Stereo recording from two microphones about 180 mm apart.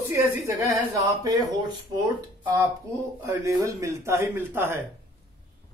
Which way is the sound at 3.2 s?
15° right (ahead or behind).